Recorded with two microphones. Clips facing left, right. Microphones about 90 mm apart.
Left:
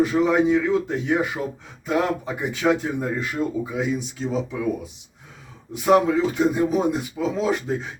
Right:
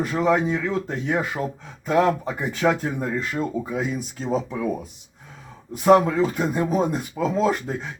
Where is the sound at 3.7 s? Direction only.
45° right (ahead or behind).